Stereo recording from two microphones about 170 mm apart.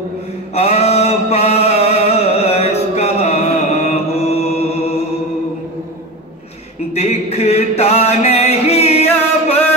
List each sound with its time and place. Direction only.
0.6 s chant: 40° left (ahead or behind)
6.9 s music: 40° left (ahead or behind)